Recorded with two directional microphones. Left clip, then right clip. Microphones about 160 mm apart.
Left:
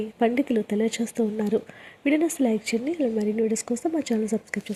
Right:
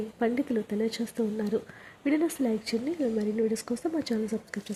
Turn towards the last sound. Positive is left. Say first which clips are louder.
# left 6 dB
turn(degrees=15)  # may be behind; listen again after turning